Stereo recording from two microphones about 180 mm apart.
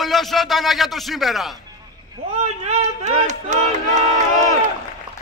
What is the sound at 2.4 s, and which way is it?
Speech, 35° right (ahead or behind).